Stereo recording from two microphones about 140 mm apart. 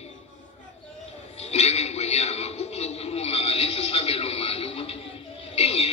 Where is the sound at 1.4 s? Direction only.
50° left (ahead or behind).